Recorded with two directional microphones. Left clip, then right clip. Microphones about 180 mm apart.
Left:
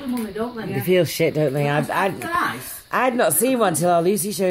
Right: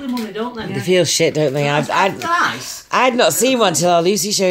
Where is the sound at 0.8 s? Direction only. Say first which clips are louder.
Right 4 dB; centre (ahead or behind).